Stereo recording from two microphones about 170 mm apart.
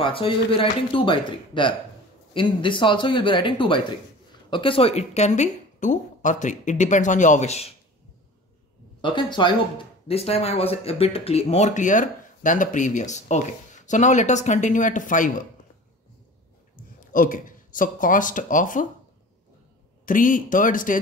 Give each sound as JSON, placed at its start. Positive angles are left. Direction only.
{"t": 0.0, "sound": "speech", "side_deg": 30}
{"t": 9.0, "sound": "speech", "side_deg": 30}
{"t": 17.1, "sound": "speech", "side_deg": 55}
{"t": 20.1, "sound": "speech", "side_deg": 50}